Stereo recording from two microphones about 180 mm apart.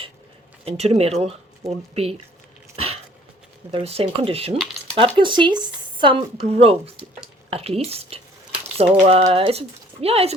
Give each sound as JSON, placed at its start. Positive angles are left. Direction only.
{"t": 0.6, "sound": "speech", "side_deg": -35}
{"t": 2.7, "sound": "dog", "side_deg": -35}
{"t": 3.7, "sound": "speech", "side_deg": -35}